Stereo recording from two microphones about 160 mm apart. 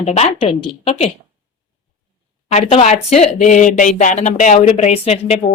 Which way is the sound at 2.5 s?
40° left (ahead or behind).